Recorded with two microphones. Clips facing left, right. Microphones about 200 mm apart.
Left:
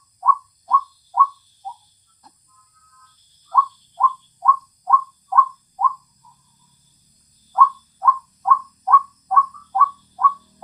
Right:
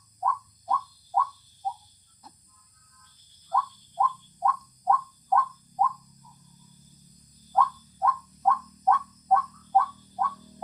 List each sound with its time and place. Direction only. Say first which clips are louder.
0.2 s bird: left 6 dB; 30° right (ahead or behind)
3.5 s a sound: left 6 dB; 25° right (ahead or behind)
7.5 s bird: left 5 dB; 30° right (ahead or behind)